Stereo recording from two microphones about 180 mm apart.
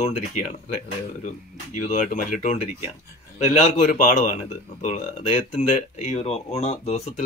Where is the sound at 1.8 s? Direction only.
45° left (ahead or behind).